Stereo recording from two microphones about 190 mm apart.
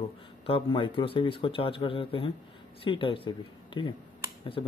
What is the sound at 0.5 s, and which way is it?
Speech, 30° left (ahead or behind).